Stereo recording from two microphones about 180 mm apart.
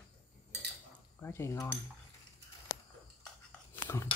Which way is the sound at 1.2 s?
15° left (ahead or behind).